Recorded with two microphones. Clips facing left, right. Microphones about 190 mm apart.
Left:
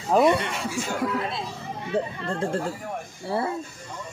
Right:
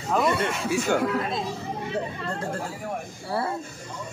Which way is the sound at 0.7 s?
65° right (ahead or behind).